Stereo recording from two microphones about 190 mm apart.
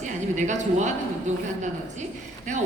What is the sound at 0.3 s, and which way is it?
Speech, 40° right (ahead or behind).